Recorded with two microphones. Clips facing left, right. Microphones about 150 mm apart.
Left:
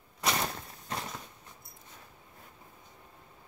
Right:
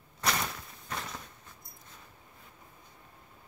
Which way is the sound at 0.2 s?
20° left (ahead or behind).